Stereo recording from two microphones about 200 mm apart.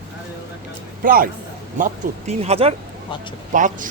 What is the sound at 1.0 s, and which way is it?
Speech, 45° right (ahead or behind).